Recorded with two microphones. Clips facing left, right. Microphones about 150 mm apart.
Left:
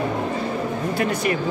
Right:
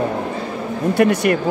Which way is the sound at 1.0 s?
60° right (ahead or behind).